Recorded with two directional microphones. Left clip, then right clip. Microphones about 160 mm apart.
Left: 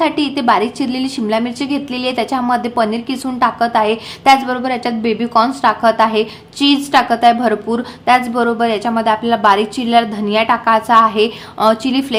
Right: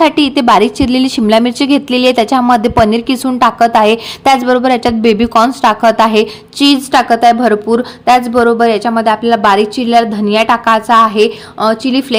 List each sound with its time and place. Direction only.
0.0 s a woman's voice: 45° right (ahead or behind); by 12.0 s 25° right (ahead or behind)